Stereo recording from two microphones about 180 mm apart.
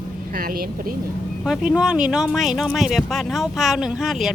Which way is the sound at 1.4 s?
5° right (ahead or behind).